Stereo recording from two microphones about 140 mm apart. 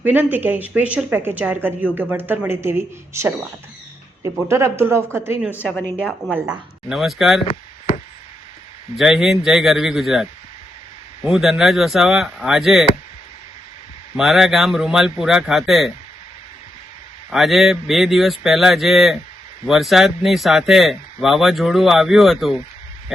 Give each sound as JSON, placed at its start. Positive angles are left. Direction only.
{"t": 0.0, "sound": "speech", "side_deg": -15}
{"t": 4.4, "sound": "speech", "side_deg": -20}
{"t": 5.5, "sound": "a woman's voice", "side_deg": 15}
{"t": 6.5, "sound": "speech", "side_deg": 0}
{"t": 9.0, "sound": "speech", "side_deg": 0}
{"t": 11.3, "sound": "speech", "side_deg": 0}
{"t": 14.2, "sound": "speech", "side_deg": 0}
{"t": 17.3, "sound": "speech", "side_deg": 0}